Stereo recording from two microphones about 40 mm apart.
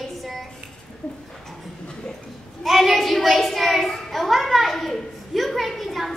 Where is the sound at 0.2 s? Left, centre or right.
Centre.